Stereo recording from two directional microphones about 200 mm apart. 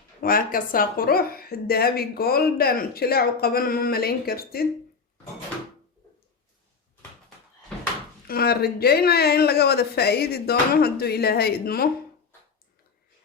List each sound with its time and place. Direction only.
0.2 s speech: 45° left (ahead or behind)
8.3 s speech: 50° left (ahead or behind)